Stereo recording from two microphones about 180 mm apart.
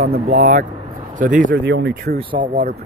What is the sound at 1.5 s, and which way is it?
Speech, 75° right (ahead or behind).